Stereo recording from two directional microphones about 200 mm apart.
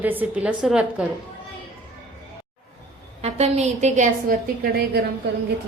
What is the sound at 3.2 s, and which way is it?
A woman's voice, 30° right (ahead or behind).